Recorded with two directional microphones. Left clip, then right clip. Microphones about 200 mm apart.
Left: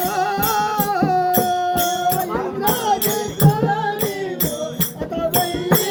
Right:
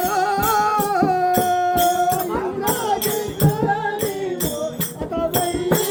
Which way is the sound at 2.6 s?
25° left (ahead or behind).